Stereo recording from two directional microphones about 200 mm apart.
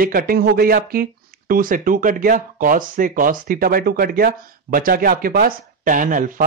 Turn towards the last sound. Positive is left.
turn(degrees=-40)  # may be behind; listen again after turning